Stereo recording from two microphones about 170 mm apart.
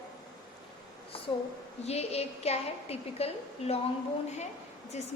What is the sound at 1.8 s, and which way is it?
A woman's voice, 40° left (ahead or behind).